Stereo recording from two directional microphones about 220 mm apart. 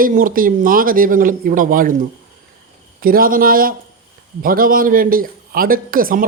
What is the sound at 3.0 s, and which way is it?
Speech, 40° right (ahead or behind).